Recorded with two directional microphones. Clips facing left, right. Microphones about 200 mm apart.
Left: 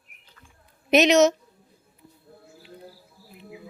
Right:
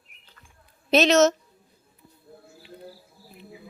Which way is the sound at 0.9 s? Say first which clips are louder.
Left 1 dB; 15° left (ahead or behind).